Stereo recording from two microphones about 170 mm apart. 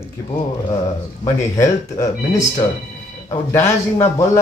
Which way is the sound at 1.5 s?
20° left (ahead or behind).